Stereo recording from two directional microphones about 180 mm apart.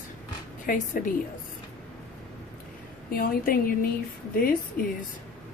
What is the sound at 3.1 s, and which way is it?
A woman's voice, 55° left (ahead or behind).